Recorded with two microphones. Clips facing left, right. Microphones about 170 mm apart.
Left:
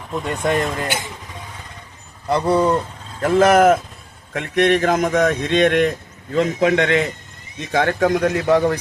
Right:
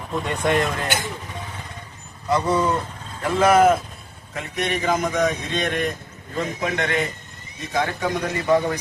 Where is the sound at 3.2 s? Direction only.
45° left (ahead or behind).